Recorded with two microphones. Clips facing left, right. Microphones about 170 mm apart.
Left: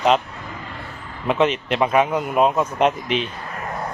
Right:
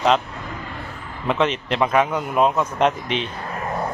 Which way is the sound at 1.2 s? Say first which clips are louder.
Left 2 dB; 10° left (ahead or behind).